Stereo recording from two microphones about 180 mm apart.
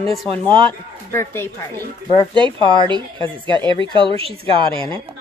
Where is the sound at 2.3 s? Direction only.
25° right (ahead or behind).